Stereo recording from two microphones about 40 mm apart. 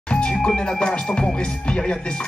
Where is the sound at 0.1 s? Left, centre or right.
Left.